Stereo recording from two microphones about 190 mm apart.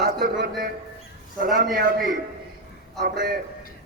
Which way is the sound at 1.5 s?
50° right (ahead or behind).